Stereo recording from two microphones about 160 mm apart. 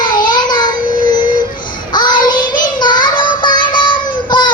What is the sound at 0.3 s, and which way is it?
Child singing, 25° left (ahead or behind).